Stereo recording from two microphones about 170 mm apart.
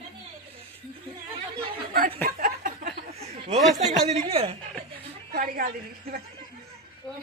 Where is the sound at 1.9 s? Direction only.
60° right (ahead or behind).